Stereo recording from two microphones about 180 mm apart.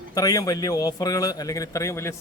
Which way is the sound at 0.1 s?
20° left (ahead or behind).